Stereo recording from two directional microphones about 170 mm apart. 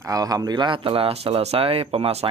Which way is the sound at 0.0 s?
20° right (ahead or behind).